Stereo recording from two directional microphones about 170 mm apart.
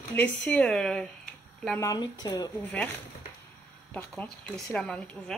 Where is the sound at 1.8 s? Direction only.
20° left (ahead or behind).